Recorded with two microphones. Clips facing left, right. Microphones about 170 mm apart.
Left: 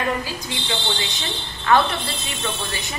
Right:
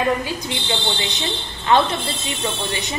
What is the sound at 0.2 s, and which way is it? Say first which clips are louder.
A woman's voice: right 3 dB; 25° right (ahead or behind).